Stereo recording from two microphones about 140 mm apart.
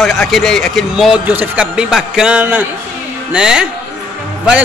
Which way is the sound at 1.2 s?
10° right (ahead or behind).